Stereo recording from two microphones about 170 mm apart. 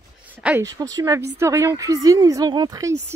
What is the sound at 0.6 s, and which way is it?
A woman's voice, 20° right (ahead or behind).